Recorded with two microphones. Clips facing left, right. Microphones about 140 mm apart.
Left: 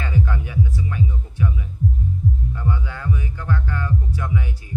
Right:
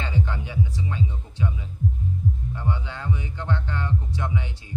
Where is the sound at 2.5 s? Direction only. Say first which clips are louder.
Left 3 dB; 25° right (ahead or behind).